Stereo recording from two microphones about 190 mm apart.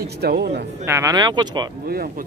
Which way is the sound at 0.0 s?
55° right (ahead or behind).